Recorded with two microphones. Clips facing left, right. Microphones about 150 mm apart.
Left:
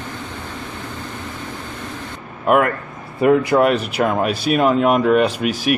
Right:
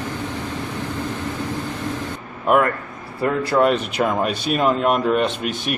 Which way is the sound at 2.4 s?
5° left (ahead or behind).